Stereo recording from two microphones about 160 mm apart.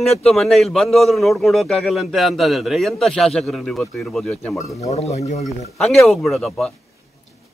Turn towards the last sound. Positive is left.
turn(degrees=0)  # may be behind; listen again after turning